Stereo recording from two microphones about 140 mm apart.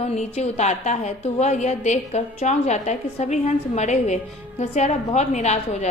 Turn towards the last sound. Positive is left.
turn(degrees=55)  # may be behind; listen again after turning